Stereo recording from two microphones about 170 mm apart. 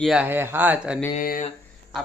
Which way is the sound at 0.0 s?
5° right (ahead or behind).